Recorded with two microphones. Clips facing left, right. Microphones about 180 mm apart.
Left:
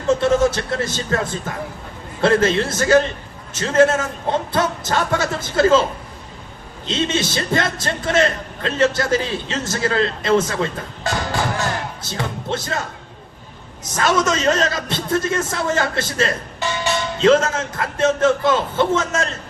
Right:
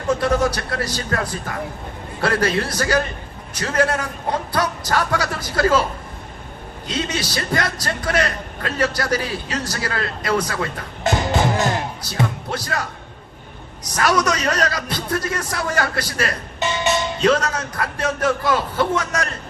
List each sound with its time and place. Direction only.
0.1 s a man's voice: 25° left (ahead or behind)
6.8 s a man's voice: 25° left (ahead or behind)
11.0 s music: 20° right (ahead or behind)
12.0 s a man's voice: 25° left (ahead or behind)
13.9 s a man's voice: 25° left (ahead or behind)
16.6 s music: 20° right (ahead or behind)
17.2 s a man's voice: 25° left (ahead or behind)